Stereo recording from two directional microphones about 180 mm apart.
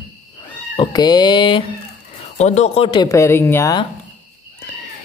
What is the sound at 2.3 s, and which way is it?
Speech, 40° left (ahead or behind).